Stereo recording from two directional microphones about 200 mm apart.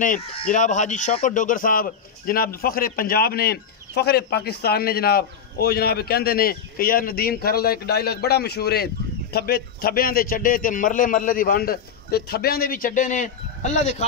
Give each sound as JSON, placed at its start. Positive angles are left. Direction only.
{"t": 0.0, "sound": "speech", "side_deg": 40}